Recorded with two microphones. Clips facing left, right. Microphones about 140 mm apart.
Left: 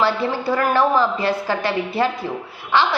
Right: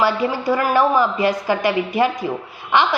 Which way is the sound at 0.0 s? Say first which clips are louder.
Right 1 dB; 15° right (ahead or behind).